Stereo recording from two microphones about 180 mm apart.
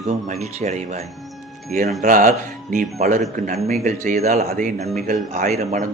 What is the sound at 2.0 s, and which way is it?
Speech, 45° right (ahead or behind).